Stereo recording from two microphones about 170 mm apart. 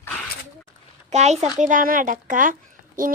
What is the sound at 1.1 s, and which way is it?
A woman's voice, 40° right (ahead or behind).